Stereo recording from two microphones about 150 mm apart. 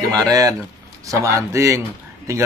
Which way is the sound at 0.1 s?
25° right (ahead or behind).